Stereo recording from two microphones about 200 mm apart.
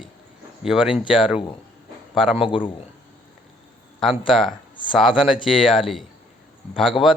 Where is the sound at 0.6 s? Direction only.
Centre (ahead or behind).